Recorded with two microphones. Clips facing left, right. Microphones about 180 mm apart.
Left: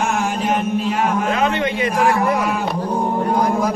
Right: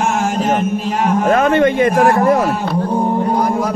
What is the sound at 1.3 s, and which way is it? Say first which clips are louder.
A man's voice: right 7 dB; 50° right (ahead or behind).